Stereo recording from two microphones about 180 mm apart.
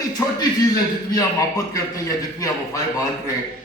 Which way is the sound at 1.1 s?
20° left (ahead or behind).